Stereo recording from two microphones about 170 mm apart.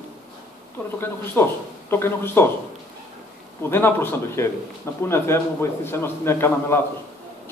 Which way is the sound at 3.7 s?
15° left (ahead or behind).